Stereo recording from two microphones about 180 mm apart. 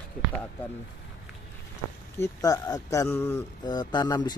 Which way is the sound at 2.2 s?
20° left (ahead or behind).